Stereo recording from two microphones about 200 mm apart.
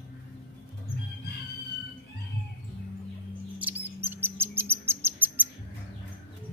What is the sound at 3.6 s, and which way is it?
Bird, 10° right (ahead or behind).